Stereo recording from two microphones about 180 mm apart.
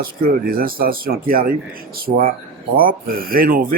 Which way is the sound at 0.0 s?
55° right (ahead or behind).